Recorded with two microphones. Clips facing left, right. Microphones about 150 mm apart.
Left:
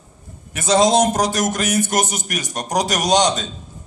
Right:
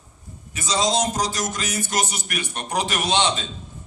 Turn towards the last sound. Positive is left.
turn(degrees=40)  # may be behind; listen again after turning